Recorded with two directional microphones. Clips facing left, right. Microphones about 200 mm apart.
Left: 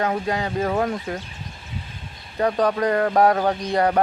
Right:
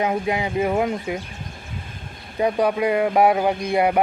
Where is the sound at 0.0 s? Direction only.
15° right (ahead or behind).